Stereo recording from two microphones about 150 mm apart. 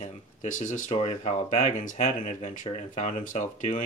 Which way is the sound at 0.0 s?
55° left (ahead or behind).